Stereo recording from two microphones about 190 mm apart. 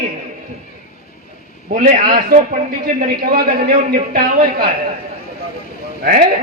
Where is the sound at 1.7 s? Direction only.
45° right (ahead or behind).